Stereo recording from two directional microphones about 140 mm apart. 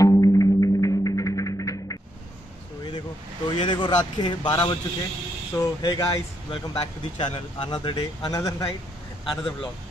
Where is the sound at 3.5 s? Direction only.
35° left (ahead or behind).